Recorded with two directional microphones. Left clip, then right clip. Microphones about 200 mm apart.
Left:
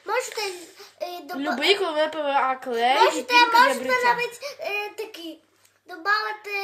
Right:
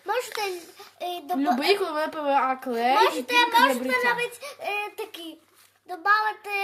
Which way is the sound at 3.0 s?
40° right (ahead or behind).